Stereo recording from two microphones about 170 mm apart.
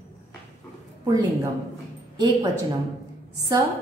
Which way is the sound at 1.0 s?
20° right (ahead or behind).